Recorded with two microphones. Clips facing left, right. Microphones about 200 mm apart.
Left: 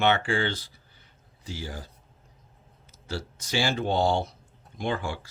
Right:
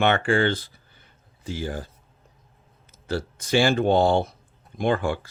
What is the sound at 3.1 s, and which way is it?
Speech, 55° right (ahead or behind).